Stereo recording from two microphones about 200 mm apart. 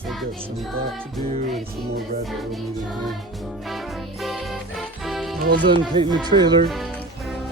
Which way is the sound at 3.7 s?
Centre (ahead or behind).